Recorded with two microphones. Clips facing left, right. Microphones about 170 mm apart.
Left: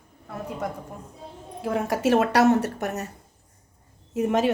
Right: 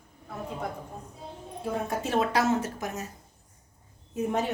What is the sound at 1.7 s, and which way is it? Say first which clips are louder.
Speech: left 8 dB; 90° left.